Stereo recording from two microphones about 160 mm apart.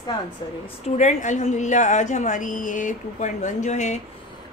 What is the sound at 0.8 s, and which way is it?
A woman's voice, 45° left (ahead or behind).